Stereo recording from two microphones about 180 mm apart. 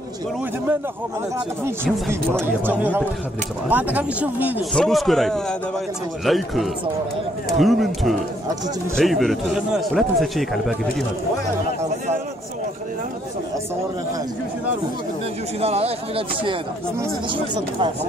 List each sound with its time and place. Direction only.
1.9 s speech: 5° left (ahead or behind)
2.4 s speech: 10° right (ahead or behind)
4.7 s speech: centre (ahead or behind)
15.6 s speech: 35° right (ahead or behind)
17.6 s speech: 25° right (ahead or behind)